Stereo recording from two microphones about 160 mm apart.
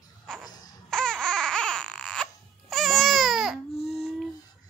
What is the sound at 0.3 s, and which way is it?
Cough, 5° left (ahead or behind).